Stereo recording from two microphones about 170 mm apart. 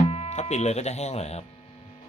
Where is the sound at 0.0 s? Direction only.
35° left (ahead or behind).